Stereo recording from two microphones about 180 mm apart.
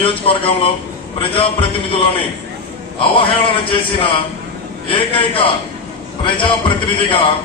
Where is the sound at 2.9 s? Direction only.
30° left (ahead or behind).